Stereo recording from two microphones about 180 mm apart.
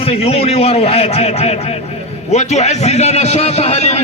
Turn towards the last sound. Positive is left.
turn(degrees=35)  # may be behind; listen again after turning